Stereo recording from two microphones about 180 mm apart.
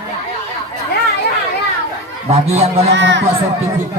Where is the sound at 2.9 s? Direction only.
90° right.